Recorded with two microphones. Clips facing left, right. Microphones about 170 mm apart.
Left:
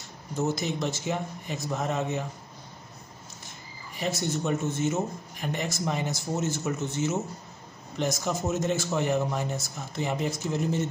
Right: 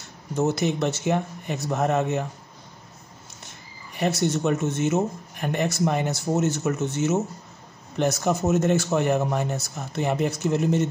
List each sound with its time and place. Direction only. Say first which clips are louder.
0.4 s speech: right 5 dB; 65° right (ahead or behind)
3.9 s speech: right 6 dB; 65° right (ahead or behind)